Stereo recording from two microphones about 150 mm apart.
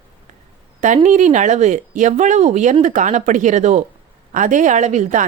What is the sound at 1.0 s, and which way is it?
A woman's voice, 55° right (ahead or behind).